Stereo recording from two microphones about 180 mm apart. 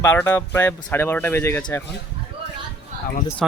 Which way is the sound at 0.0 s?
10° left (ahead or behind).